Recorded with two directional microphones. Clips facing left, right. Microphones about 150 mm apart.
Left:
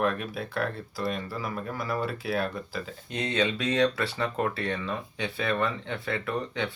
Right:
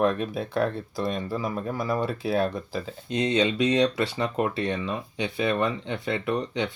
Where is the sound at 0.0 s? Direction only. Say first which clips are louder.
Right 4 dB; 25° right (ahead or behind).